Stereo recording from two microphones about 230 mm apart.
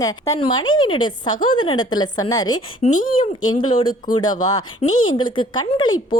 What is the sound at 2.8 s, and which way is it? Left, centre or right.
Speech, left.